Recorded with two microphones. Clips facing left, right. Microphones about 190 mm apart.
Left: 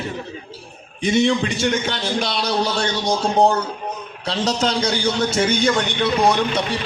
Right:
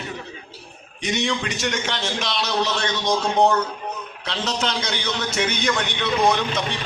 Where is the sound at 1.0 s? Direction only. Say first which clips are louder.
Left 7 dB; 30° left (ahead or behind).